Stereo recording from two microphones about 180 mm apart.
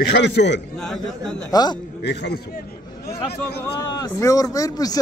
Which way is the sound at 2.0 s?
70° left (ahead or behind).